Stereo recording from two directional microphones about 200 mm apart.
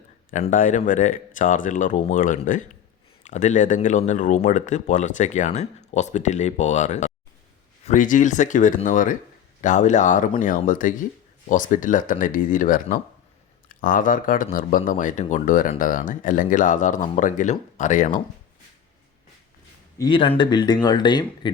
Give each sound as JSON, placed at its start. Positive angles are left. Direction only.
{"t": 0.3, "sound": "speech", "side_deg": 40}
{"t": 20.0, "sound": "speech", "side_deg": 25}